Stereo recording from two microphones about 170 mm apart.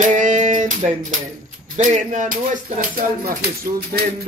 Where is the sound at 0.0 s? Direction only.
45° right (ahead or behind).